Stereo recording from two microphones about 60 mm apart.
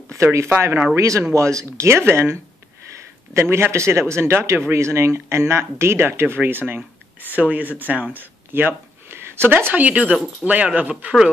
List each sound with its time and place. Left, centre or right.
0.1 s speech: right
0.9 s speech: right
3.3 s speech: right